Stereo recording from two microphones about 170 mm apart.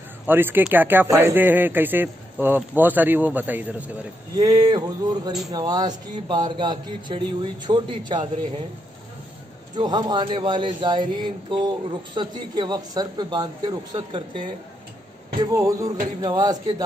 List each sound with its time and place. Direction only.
0.3 s speech: 10° right (ahead or behind)
4.4 s speech: 20° right (ahead or behind)
9.8 s speech: 25° right (ahead or behind)